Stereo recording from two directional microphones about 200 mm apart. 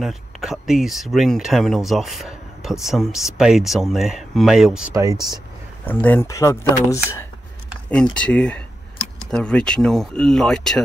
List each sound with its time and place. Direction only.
0.0 s speech: centre (ahead or behind)
4.9 s speech: 20° right (ahead or behind)
5.9 s speech: 10° left (ahead or behind)